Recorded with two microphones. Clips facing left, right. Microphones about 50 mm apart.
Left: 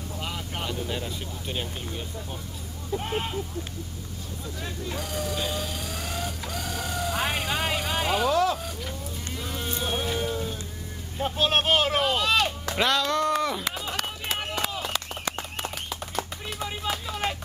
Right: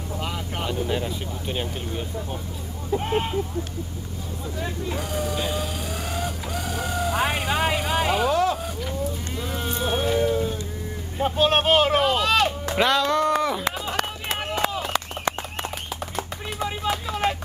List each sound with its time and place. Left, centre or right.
0.2 s speech: centre
4.6 s vehicle: centre
8.3 s vehicle: right
9.4 s boat: centre
11.1 s speech: centre
13.7 s run: centre
16.2 s a sound: centre